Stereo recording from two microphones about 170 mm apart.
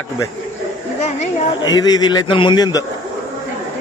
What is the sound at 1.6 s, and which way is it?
A man's voice, 25° left (ahead or behind).